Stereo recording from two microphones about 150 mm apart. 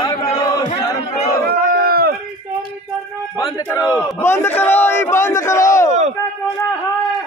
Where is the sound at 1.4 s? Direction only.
80° right.